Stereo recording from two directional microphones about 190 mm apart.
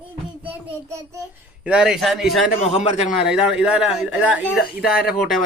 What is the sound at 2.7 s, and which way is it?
Speech, 35° left (ahead or behind).